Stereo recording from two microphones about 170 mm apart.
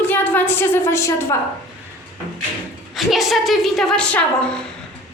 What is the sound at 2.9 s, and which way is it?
A woman's voice, centre (ahead or behind).